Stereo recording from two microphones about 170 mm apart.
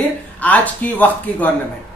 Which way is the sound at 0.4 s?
10° left (ahead or behind).